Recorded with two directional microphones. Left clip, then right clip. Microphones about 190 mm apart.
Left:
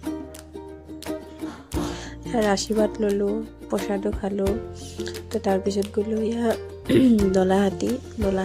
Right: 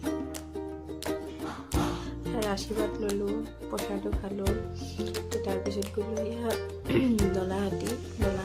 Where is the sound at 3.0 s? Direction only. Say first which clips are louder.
Left 7 dB; centre (ahead or behind).